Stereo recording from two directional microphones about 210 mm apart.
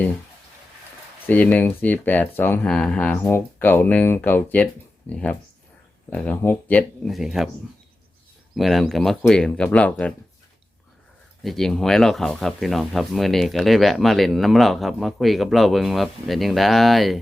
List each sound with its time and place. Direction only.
1.3 s speech: 5° left (ahead or behind)
8.5 s speech: centre (ahead or behind)
11.4 s speech: centre (ahead or behind)